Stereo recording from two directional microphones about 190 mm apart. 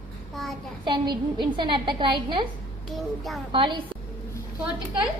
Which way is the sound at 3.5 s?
25° right (ahead or behind).